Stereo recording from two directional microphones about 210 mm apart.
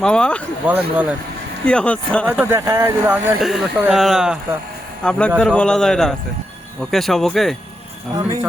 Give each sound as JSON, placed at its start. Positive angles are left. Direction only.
{"t": 0.0, "sound": "speech", "side_deg": 5}
{"t": 0.6, "sound": "speech", "side_deg": -10}
{"t": 1.6, "sound": "speech", "side_deg": 5}
{"t": 2.2, "sound": "speech", "side_deg": -10}
{"t": 8.1, "sound": "speech", "side_deg": -15}